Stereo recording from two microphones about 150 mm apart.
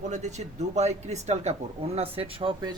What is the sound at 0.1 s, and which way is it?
Speech, 50° right (ahead or behind).